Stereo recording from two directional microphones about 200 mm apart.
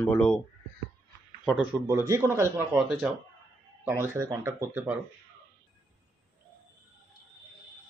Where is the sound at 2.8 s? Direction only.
5° right (ahead or behind).